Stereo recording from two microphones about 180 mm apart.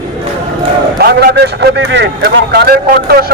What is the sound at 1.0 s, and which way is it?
A man's voice, 65° right (ahead or behind).